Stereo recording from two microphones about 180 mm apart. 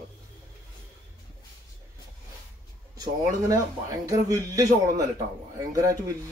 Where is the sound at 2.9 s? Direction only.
20° right (ahead or behind).